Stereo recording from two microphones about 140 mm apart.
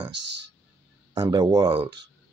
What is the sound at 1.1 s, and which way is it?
Speech, 30° right (ahead or behind).